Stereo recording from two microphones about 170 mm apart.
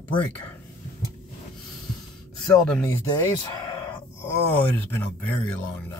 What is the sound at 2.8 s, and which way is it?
Speech, 15° left (ahead or behind).